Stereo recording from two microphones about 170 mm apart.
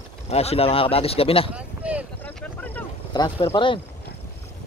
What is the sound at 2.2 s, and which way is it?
Vehicle, 10° left (ahead or behind).